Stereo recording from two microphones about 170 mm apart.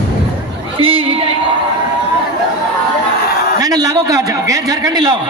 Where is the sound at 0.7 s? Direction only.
30° right (ahead or behind).